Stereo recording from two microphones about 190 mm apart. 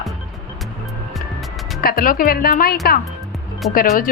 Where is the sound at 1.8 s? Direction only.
50° left (ahead or behind).